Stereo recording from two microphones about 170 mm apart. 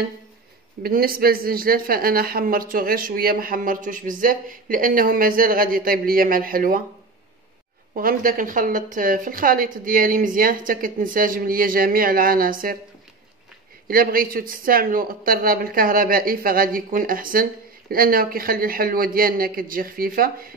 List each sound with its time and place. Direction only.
0.8 s speech: 60° right (ahead or behind)
7.9 s speech: 55° right (ahead or behind)
13.8 s speech: 60° right (ahead or behind)